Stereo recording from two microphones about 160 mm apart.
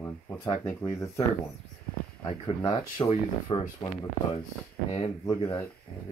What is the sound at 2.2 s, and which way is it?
Speech, 25° left (ahead or behind).